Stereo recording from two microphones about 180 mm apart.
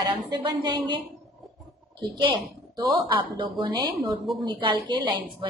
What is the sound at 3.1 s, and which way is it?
Speech, 30° right (ahead or behind).